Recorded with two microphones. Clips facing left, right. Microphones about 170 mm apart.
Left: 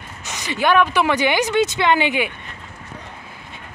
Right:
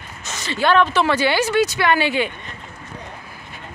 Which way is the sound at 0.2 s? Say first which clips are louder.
Even; 15° left (ahead or behind).